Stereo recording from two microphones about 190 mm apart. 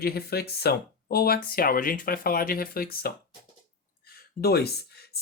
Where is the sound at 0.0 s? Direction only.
55° left (ahead or behind).